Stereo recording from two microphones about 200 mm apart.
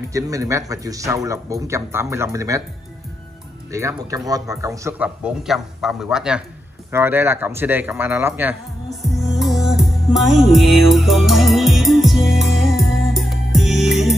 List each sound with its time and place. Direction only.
0.1 s speech: 15° right (ahead or behind)
3.7 s speech: 15° right (ahead or behind)
9.2 s music: centre (ahead or behind)